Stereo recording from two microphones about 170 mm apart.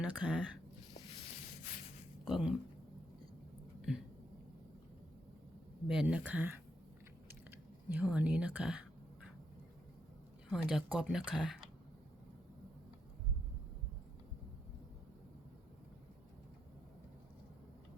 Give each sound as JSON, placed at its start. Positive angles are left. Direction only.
{"t": 0.0, "sound": "speech", "side_deg": -5}
{"t": 2.2, "sound": "speech", "side_deg": -5}
{"t": 3.8, "sound": "a sound", "side_deg": -5}
{"t": 5.9, "sound": "speech", "side_deg": -5}
{"t": 7.9, "sound": "speech", "side_deg": -5}
{"t": 10.5, "sound": "speech", "side_deg": 0}